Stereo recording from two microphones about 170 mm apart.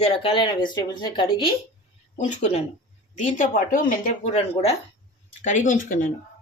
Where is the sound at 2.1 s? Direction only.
45° left (ahead or behind).